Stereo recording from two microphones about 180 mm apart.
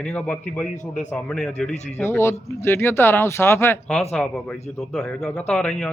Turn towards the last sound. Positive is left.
turn(degrees=5)  # may be behind; listen again after turning